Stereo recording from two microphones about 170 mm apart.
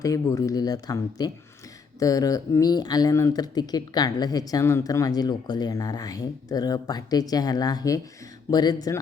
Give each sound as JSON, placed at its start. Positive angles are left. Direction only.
{"t": 0.0, "sound": "speech", "side_deg": 20}